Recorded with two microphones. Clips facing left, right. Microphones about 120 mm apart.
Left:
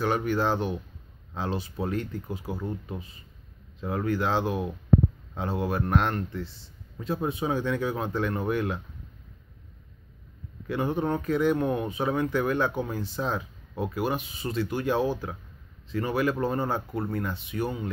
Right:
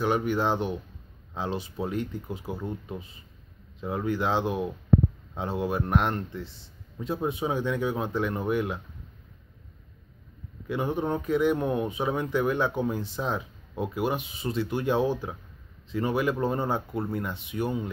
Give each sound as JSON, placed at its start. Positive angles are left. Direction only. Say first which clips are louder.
{"t": 0.0, "sound": "speech", "louder": "even", "side_deg": -15}
{"t": 3.8, "sound": "speech", "louder": "even", "side_deg": -15}
{"t": 10.7, "sound": "speech", "louder": "left 1 dB", "side_deg": -15}